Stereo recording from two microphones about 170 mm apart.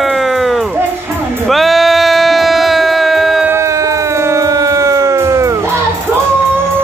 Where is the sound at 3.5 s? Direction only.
20° right (ahead or behind).